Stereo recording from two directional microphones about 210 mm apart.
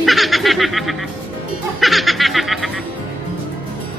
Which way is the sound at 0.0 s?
Centre (ahead or behind).